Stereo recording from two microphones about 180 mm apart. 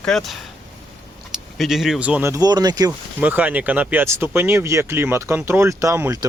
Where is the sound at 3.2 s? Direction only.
10° right (ahead or behind).